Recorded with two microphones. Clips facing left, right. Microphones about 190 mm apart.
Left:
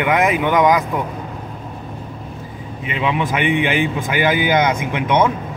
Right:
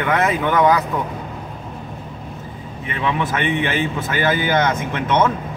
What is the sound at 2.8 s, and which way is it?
Speech, 15° left (ahead or behind).